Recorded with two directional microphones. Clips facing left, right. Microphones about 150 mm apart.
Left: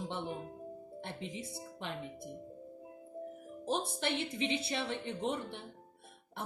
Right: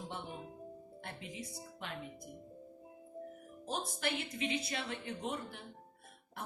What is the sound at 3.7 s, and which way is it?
A woman's voice, 25° left (ahead or behind).